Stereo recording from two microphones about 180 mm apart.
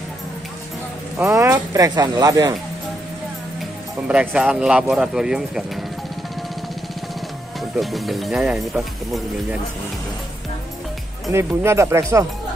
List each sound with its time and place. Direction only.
1.1 s speech: 15° right (ahead or behind)
4.1 s speech: 5° right (ahead or behind)
7.7 s speech: centre (ahead or behind)
11.3 s speech: 15° right (ahead or behind)